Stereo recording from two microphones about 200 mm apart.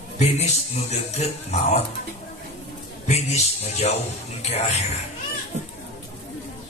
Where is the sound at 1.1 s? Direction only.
35° left (ahead or behind).